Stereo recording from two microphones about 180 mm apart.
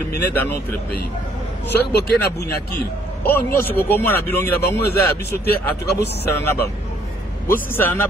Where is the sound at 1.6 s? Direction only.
65° left (ahead or behind).